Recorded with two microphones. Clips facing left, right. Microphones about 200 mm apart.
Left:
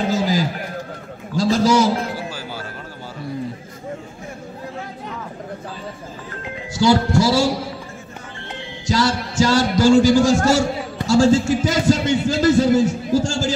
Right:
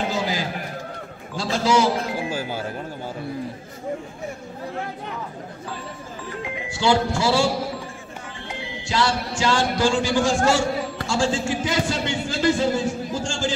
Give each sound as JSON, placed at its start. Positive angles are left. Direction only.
{"t": 0.1, "sound": "a sound", "side_deg": 40}
{"t": 6.7, "sound": "a man's voice", "side_deg": 40}
{"t": 8.8, "sound": "a man's voice", "side_deg": 40}